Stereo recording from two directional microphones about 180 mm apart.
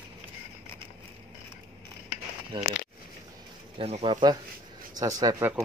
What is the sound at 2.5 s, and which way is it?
Speech, 25° right (ahead or behind).